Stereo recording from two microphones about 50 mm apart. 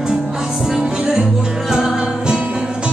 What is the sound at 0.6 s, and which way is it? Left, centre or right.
Music, centre.